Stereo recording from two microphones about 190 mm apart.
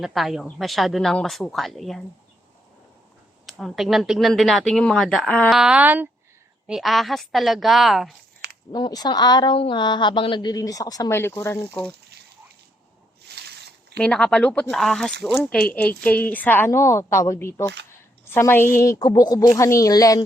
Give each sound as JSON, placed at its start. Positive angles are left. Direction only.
{"t": 0.0, "sound": "speech", "side_deg": 0}
{"t": 3.4, "sound": "speech", "side_deg": 0}
{"t": 8.7, "sound": "a woman's voice", "side_deg": 20}
{"t": 13.3, "sound": "a sound", "side_deg": -60}
{"t": 14.0, "sound": "a woman's voice", "side_deg": 5}